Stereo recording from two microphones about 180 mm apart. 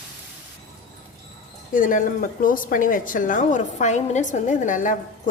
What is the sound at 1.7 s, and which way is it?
A woman's voice, 45° left (ahead or behind).